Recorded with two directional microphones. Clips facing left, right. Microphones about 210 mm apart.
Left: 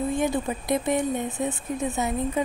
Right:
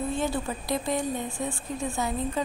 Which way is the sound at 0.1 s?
15° left (ahead or behind).